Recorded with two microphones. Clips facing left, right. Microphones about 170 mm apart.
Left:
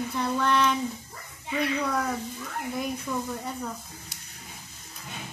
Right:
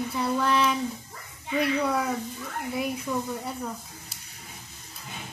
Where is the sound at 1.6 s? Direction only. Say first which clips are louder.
Right 2 dB; 5° right (ahead or behind).